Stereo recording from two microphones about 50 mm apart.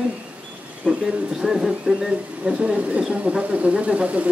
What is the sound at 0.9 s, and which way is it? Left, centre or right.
Speech, right.